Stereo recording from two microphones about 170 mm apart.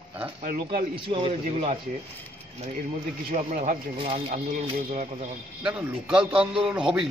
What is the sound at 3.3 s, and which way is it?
Speech, 50° right (ahead or behind).